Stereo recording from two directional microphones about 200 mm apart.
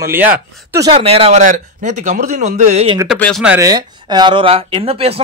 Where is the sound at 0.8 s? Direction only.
30° right (ahead or behind).